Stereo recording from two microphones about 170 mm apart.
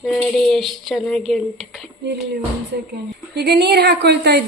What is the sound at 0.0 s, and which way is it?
Speech, centre (ahead or behind).